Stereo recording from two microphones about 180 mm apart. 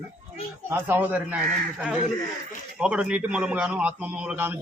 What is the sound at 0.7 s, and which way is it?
Speech, 10° right (ahead or behind).